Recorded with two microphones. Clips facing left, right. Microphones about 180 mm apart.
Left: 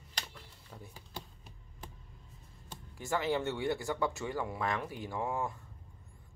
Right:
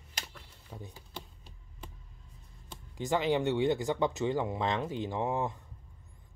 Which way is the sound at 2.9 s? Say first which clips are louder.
Right 4 dB; 20° right (ahead or behind).